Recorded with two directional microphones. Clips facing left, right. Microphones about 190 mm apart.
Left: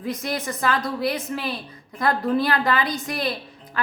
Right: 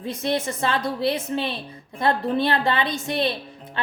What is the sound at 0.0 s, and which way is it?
A woman's voice, 25° right (ahead or behind).